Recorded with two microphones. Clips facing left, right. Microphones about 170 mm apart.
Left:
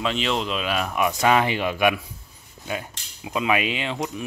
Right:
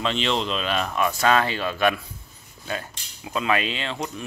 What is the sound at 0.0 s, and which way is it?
Speech, 5° left (ahead or behind).